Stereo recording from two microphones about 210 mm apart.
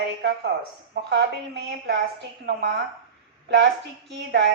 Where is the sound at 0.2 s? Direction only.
55° right (ahead or behind).